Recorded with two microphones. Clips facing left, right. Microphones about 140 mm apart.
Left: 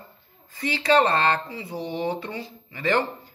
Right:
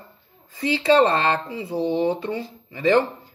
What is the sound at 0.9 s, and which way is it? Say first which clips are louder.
A man's voice: right 1 dB; 20° right (ahead or behind).